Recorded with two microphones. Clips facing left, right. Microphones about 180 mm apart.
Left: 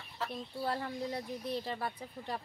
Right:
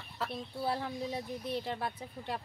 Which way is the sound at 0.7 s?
5° right (ahead or behind).